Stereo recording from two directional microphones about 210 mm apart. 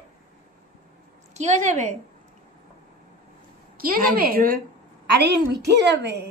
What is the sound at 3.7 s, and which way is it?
A woman's voice, 45° right (ahead or behind).